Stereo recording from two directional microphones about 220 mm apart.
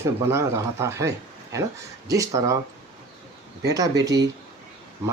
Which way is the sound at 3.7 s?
15° right (ahead or behind).